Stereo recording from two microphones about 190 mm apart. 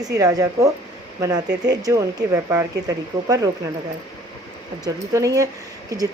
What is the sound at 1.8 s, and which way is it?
Speech, 15° right (ahead or behind).